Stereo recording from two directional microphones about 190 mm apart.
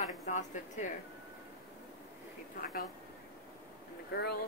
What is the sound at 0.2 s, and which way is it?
Speech, 40° left (ahead or behind).